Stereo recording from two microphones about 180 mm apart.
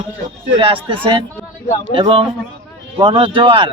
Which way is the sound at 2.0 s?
30° right (ahead or behind).